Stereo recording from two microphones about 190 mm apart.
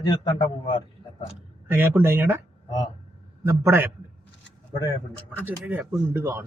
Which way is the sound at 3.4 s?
10° right (ahead or behind).